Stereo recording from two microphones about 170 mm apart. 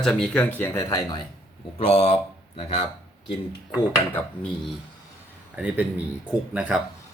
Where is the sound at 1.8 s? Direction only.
40° left (ahead or behind).